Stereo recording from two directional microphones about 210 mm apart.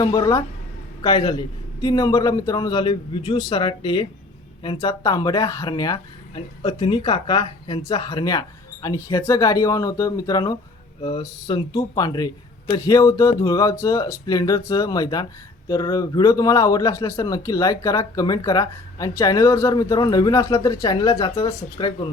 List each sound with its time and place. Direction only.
0.0 s a man's voice: 20° left (ahead or behind)